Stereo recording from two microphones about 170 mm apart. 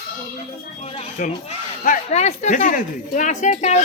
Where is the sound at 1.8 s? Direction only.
40° left (ahead or behind).